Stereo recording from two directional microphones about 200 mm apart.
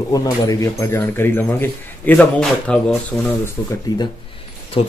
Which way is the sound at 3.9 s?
20° left (ahead or behind).